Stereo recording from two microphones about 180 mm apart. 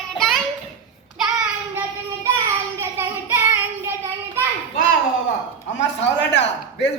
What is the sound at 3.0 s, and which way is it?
Child singing, 10° right (ahead or behind).